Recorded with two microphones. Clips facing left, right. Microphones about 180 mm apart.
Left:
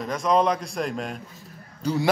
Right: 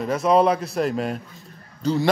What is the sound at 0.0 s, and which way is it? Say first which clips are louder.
A man's voice: right 4 dB; 5° right (ahead or behind).